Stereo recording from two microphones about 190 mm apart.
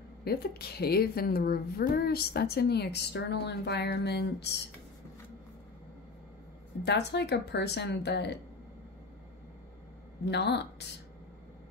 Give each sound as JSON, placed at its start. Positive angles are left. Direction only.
{"t": 0.2, "sound": "a woman's voice", "side_deg": 55}
{"t": 6.8, "sound": "a woman's voice", "side_deg": 65}
{"t": 10.2, "sound": "a woman's voice", "side_deg": 60}